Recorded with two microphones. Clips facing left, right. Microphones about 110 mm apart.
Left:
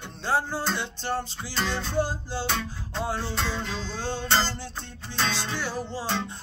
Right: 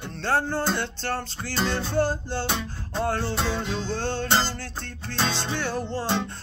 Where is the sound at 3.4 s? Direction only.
15° right (ahead or behind).